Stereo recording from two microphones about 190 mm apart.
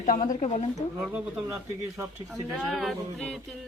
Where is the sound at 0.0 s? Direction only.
40° left (ahead or behind).